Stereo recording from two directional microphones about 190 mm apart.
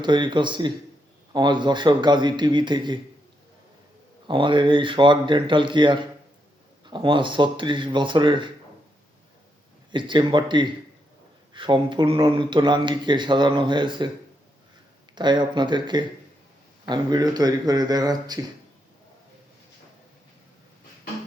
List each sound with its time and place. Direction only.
0.0 s speech: 25° right (ahead or behind)
4.3 s speech: 25° right (ahead or behind)
9.9 s speech: 25° right (ahead or behind)
15.1 s speech: 25° right (ahead or behind)